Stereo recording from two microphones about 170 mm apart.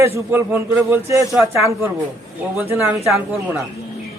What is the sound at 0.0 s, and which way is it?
A man's voice, 15° right (ahead or behind).